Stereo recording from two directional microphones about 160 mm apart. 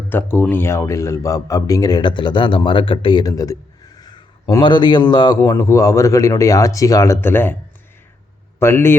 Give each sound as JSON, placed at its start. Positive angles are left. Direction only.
{"t": 0.1, "sound": "speech", "side_deg": 15}
{"t": 8.5, "sound": "a man's voice", "side_deg": 15}